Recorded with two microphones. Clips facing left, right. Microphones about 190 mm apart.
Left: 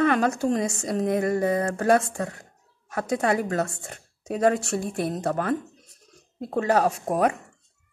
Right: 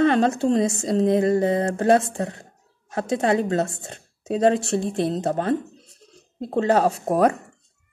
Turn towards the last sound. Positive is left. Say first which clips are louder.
# right 4 dB
turn(degrees=-35)  # may be behind; listen again after turning